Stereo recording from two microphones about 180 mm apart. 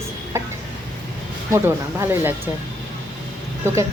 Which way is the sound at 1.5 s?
15° right (ahead or behind).